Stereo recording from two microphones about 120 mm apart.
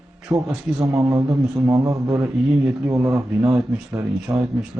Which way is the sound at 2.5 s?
5° right (ahead or behind).